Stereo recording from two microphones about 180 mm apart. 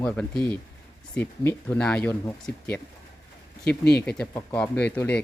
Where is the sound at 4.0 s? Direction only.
5° left (ahead or behind).